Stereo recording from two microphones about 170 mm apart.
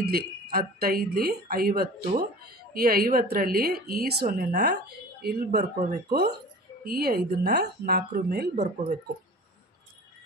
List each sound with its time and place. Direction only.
0.0 s a woman's voice: 60° right (ahead or behind)